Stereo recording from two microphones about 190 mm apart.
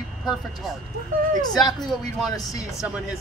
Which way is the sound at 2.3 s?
15° left (ahead or behind).